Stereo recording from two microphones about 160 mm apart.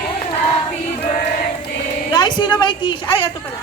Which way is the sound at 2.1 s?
25° left (ahead or behind).